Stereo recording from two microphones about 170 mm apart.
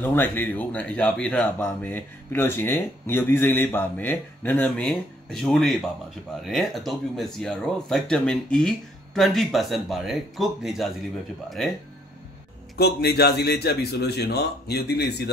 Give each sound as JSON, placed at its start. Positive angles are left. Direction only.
{"t": 0.0, "sound": "speech", "side_deg": 10}
{"t": 12.7, "sound": "a man's voice", "side_deg": 70}